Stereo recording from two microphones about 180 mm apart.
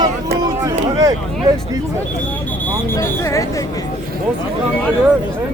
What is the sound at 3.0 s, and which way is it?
Speech, 15° left (ahead or behind).